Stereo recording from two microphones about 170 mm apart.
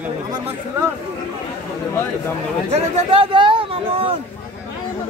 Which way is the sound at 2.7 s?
35° right (ahead or behind).